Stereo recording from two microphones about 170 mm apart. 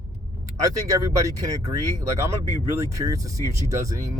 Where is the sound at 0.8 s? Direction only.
20° right (ahead or behind).